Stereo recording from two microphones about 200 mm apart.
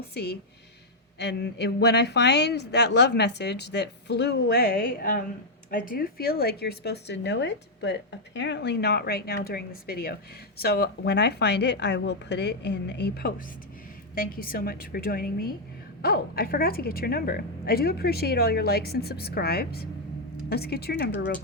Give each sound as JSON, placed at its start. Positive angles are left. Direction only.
{"t": 0.1, "sound": "a woman's voice", "side_deg": 55}